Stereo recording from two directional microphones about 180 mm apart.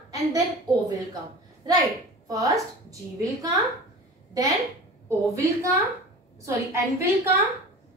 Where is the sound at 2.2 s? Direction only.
20° right (ahead or behind).